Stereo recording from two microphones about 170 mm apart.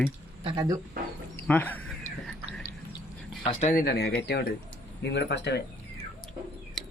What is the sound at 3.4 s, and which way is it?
Speech, 40° left (ahead or behind).